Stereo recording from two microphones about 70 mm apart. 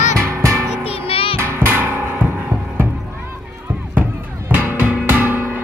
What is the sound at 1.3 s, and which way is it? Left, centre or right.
Music, right.